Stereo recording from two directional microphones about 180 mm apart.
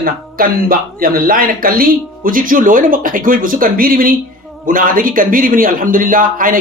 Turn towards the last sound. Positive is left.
turn(degrees=-50)  # may be behind; listen again after turning